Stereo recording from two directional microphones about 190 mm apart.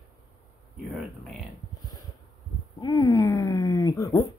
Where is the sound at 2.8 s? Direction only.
20° left (ahead or behind).